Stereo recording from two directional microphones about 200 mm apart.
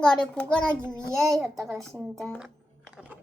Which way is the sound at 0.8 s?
15° right (ahead or behind).